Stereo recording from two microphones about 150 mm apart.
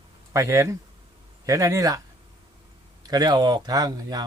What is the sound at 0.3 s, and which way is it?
Speech, 20° right (ahead or behind).